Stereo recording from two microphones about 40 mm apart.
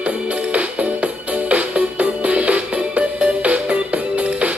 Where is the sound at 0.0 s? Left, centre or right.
Right.